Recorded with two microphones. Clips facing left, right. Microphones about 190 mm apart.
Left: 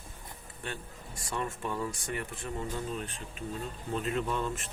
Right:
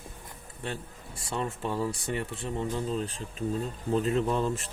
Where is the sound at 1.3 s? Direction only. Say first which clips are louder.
Right 3 dB; 30° right (ahead or behind).